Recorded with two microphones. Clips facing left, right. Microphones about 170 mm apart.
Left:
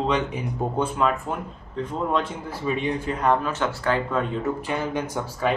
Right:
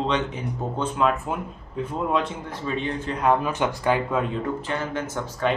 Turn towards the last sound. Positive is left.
turn(degrees=10)  # may be behind; listen again after turning